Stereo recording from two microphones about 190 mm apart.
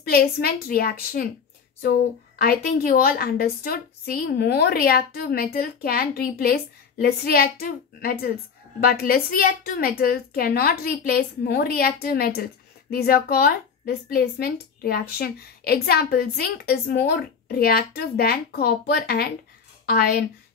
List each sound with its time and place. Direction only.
0.1 s a woman's voice: 55° left (ahead or behind)